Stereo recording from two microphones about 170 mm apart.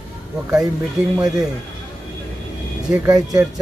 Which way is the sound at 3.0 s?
20° right (ahead or behind).